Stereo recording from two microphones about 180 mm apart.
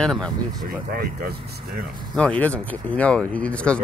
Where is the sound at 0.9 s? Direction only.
55° right (ahead or behind).